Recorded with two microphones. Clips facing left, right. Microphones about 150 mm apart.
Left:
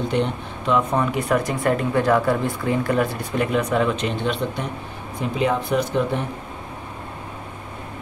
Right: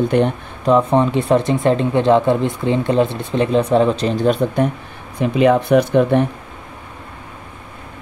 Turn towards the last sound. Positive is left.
turn(degrees=-65)  # may be behind; listen again after turning